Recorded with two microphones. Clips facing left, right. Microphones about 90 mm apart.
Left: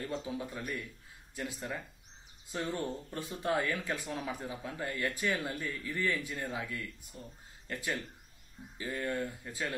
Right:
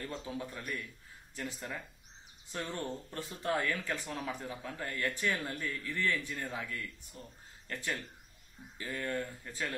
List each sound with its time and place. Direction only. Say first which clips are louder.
0.0 s speech: left 3 dB; 20° left (ahead or behind)